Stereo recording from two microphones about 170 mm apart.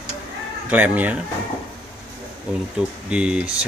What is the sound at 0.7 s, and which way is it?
Speech, 10° right (ahead or behind).